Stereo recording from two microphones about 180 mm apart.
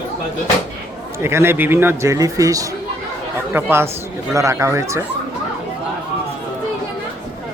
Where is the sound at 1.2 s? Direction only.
15° right (ahead or behind).